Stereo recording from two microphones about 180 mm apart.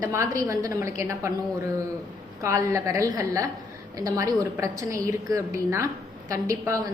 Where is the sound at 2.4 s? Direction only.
15° right (ahead or behind).